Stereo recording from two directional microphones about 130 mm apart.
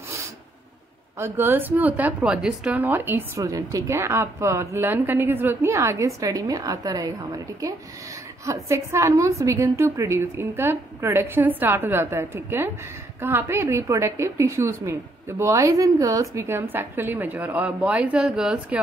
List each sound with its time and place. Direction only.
1.1 s a woman's voice: 20° right (ahead or behind)